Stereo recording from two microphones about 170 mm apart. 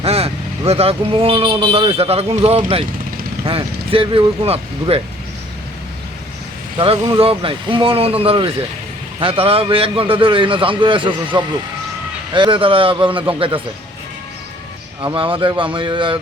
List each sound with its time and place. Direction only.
0.0 s speech: 35° right (ahead or behind)
6.7 s speech: 30° right (ahead or behind)
15.0 s speech: 30° right (ahead or behind)